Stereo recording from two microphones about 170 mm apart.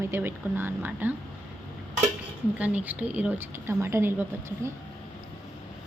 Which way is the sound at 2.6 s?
10° right (ahead or behind).